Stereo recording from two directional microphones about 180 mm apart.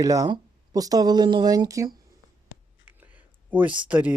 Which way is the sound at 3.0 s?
10° right (ahead or behind).